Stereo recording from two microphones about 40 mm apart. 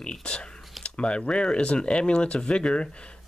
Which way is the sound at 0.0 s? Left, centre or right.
Left.